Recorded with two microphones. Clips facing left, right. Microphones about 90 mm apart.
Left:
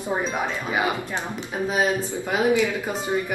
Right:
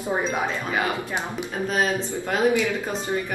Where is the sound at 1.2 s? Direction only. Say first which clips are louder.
Even; 15° left (ahead or behind).